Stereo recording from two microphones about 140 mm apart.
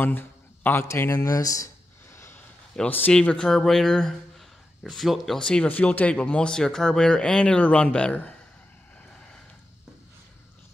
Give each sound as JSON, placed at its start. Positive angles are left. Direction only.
{"t": 0.0, "sound": "speech", "side_deg": 15}
{"t": 2.1, "sound": "a sound", "side_deg": 20}
{"t": 2.7, "sound": "speech", "side_deg": 10}